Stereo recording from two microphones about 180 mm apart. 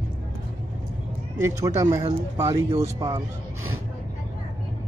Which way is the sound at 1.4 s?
15° right (ahead or behind).